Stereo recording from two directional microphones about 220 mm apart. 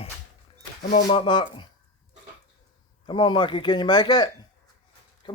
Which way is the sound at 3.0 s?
20° left (ahead or behind).